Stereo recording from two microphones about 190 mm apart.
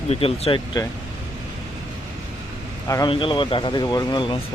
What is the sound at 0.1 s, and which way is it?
Speech, 30° left (ahead or behind).